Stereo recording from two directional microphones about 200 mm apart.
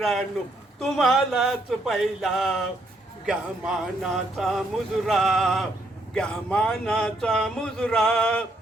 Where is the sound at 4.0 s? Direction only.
Centre (ahead or behind).